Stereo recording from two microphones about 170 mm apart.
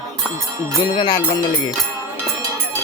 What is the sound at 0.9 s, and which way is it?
Music, 25° left (ahead or behind).